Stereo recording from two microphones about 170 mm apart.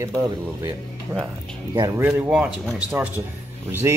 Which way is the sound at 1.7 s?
15° right (ahead or behind).